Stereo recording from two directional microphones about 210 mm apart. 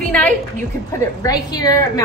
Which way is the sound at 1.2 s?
20° left (ahead or behind).